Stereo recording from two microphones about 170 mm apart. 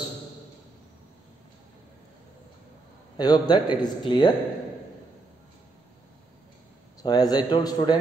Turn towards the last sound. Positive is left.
turn(degrees=25)  # may be behind; listen again after turning